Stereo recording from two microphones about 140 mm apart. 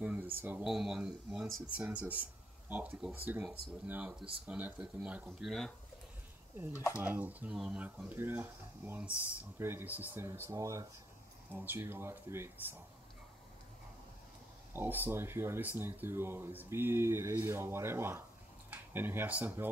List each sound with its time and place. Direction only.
0.0 s speech: 10° right (ahead or behind)
7.0 s speech: 10° right (ahead or behind)
14.7 s speech: 15° right (ahead or behind)